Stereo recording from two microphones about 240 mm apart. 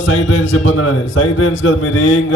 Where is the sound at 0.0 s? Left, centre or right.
Left.